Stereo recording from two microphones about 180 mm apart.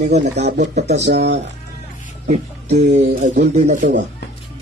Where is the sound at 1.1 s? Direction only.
70° right (ahead or behind).